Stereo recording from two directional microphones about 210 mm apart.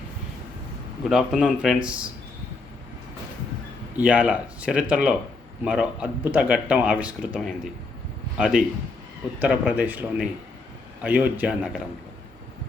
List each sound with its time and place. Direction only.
1.1 s speech: centre (ahead or behind)
3.9 s speech: 5° right (ahead or behind)